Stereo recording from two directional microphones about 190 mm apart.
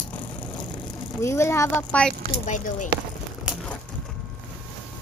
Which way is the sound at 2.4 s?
40° left (ahead or behind).